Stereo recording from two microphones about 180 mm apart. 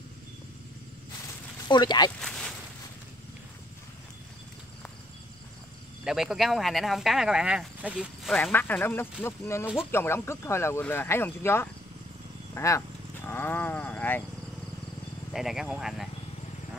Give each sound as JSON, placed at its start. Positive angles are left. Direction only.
{"t": 1.7, "sound": "speech", "side_deg": 25}
{"t": 2.2, "sound": "a sound", "side_deg": 5}
{"t": 6.0, "sound": "speech", "side_deg": 0}
{"t": 15.3, "sound": "speech", "side_deg": 0}